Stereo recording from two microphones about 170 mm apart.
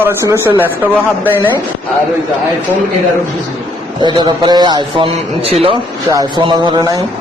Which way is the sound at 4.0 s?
25° right (ahead or behind).